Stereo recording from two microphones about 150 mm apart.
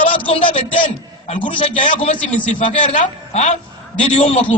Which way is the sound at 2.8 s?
45° left (ahead or behind).